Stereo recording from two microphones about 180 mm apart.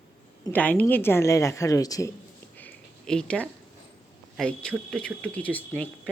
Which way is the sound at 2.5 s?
5° left (ahead or behind).